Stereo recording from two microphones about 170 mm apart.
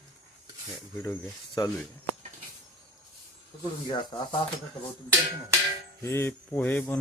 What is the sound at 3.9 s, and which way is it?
Speech, 25° left (ahead or behind).